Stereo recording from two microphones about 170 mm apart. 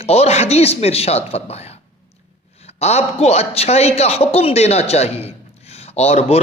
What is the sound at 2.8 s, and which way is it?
A man's voice, 40° left (ahead or behind).